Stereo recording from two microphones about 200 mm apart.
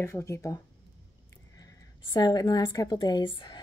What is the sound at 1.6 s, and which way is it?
A woman's voice, 20° left (ahead or behind).